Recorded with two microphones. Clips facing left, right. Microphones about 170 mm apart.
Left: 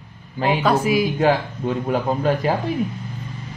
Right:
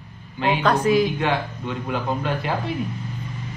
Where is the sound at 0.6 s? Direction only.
10° left (ahead or behind).